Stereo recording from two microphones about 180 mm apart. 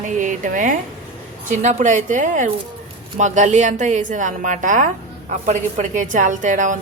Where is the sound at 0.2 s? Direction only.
45° right (ahead or behind).